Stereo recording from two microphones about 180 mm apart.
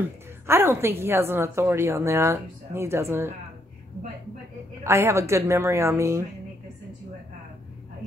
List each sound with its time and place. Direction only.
0.5 s a woman's voice: 15° right (ahead or behind)
4.8 s a woman's voice: 15° right (ahead or behind)